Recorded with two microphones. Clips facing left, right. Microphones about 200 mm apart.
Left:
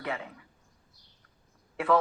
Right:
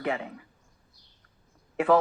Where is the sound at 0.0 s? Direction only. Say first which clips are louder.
Right 5 dB; 30° right (ahead or behind).